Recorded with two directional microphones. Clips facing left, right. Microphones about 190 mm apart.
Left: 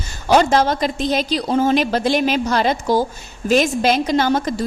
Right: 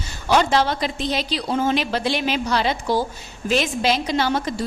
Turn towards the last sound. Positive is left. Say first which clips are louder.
# left 4 dB
turn(degrees=45)  # may be behind; listen again after turning